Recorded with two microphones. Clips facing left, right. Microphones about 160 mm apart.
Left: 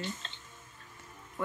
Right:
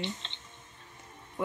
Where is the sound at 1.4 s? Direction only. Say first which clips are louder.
Right 2 dB; 20° right (ahead or behind).